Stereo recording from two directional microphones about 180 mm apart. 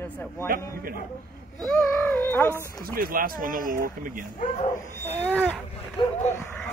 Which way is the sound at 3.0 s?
55° right (ahead or behind).